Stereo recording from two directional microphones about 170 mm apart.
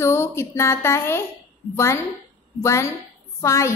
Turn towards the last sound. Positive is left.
turn(degrees=15)  # may be behind; listen again after turning